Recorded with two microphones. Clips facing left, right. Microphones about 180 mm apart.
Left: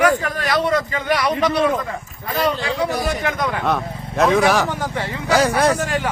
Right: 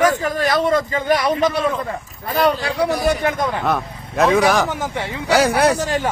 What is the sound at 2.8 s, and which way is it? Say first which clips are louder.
Speech: right 5 dB; 30° right (ahead or behind).